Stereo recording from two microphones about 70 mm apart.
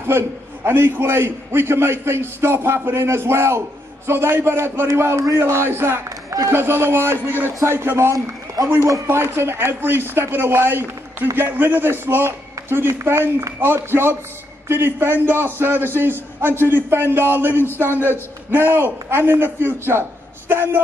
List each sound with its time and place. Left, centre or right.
0.0 s a man's voice: right
6.0 s speech: right
6.5 s a man's voice: right